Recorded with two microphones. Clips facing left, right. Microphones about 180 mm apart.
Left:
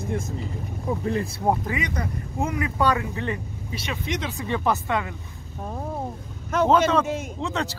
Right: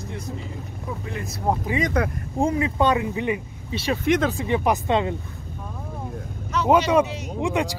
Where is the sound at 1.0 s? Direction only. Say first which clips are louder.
Left 7 dB; 35° left (ahead or behind).